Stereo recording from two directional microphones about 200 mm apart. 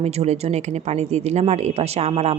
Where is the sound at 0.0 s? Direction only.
30° right (ahead or behind).